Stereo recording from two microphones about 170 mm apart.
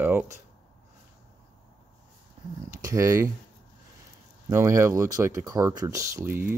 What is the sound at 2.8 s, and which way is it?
Speech, 20° right (ahead or behind).